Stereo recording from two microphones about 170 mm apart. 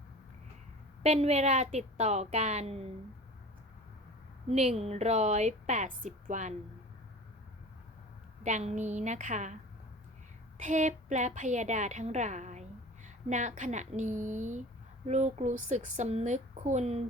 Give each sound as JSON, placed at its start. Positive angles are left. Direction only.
{"t": 1.0, "sound": "a woman's voice", "side_deg": -40}
{"t": 4.4, "sound": "a woman's voice", "side_deg": -40}
{"t": 8.4, "sound": "a woman's voice", "side_deg": -45}
{"t": 10.6, "sound": "a woman's voice", "side_deg": -45}